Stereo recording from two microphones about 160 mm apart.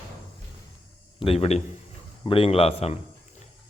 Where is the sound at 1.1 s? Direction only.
35° left (ahead or behind).